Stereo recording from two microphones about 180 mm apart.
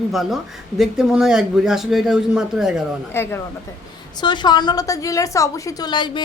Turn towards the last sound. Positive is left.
turn(degrees=25)  # may be behind; listen again after turning